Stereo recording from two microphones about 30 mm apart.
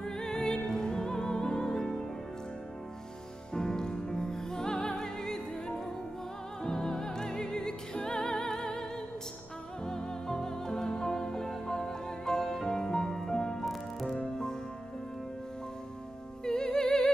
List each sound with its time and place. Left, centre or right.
0.0 s music: left
3.5 s music: left
9.8 s music: left
13.7 s music: centre
14.1 s music: left
16.4 s music: left